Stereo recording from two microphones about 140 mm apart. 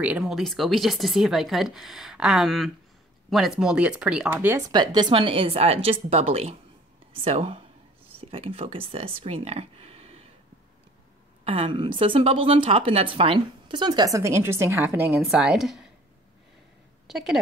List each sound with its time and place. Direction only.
0.0 s speech: 5° right (ahead or behind)
4.6 s a woman's voice: 30° right (ahead or behind)
11.4 s a woman's voice: 45° right (ahead or behind); by 15.0 s 15° right (ahead or behind)
15.1 s speech: 5° right (ahead or behind)